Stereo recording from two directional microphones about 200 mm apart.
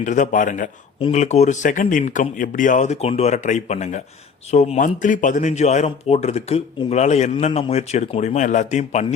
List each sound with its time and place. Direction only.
0.0 s speech: 40° left (ahead or behind)